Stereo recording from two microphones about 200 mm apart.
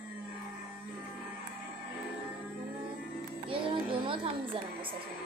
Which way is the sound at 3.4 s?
25° right (ahead or behind).